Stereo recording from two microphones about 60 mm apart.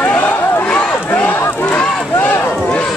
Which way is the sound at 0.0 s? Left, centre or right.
Left.